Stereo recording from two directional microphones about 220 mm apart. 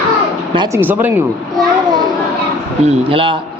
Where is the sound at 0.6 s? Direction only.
10° right (ahead or behind).